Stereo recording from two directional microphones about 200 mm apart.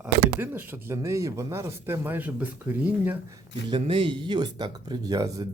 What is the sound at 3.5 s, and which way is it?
Speech, 25° right (ahead or behind).